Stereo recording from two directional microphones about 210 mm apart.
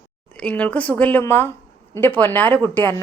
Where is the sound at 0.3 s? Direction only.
5° left (ahead or behind).